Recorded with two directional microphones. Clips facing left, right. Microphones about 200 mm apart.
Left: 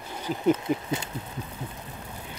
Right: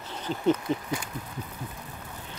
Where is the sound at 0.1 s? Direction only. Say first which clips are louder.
Left 1 dB; 10° left (ahead or behind).